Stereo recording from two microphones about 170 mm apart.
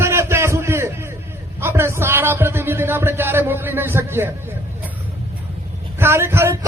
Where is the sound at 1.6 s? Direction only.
15° right (ahead or behind).